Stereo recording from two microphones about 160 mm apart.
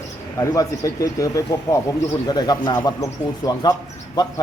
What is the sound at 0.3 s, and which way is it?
Speech, 20° left (ahead or behind).